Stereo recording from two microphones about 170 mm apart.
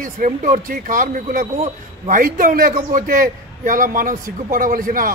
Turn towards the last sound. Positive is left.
turn(degrees=-55)  # may be behind; listen again after turning